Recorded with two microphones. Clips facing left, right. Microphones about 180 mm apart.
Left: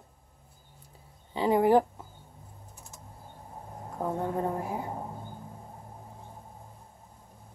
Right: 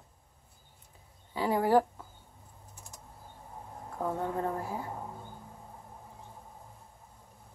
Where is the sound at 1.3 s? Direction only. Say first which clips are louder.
Left 3 dB; 20° left (ahead or behind).